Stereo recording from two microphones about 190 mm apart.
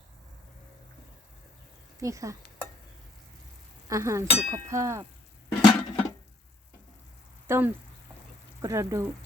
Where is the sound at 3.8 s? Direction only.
15° right (ahead or behind).